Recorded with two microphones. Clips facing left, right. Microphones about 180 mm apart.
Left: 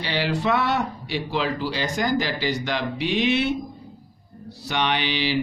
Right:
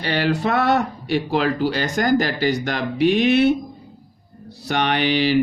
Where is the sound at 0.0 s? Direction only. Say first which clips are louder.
Right 4 dB; 50° right (ahead or behind).